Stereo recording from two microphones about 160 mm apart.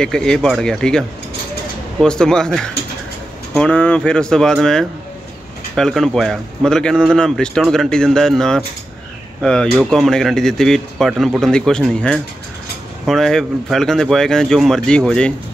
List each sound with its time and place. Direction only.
0.0 s a man's voice: 5° left (ahead or behind)